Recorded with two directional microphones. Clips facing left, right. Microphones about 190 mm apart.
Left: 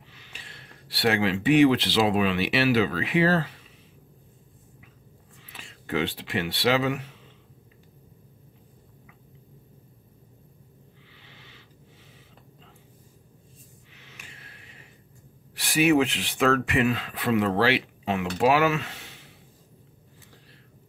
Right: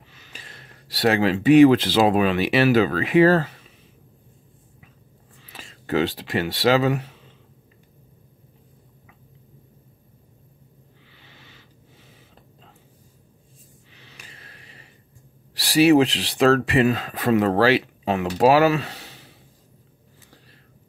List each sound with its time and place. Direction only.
0.1 s speech: 40° right (ahead or behind)
5.5 s speech: 40° right (ahead or behind)
13.9 s a sound: 35° right (ahead or behind)
15.5 s speech: 35° right (ahead or behind)